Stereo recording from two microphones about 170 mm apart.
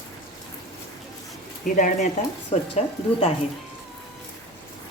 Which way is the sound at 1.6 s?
50° left (ahead or behind).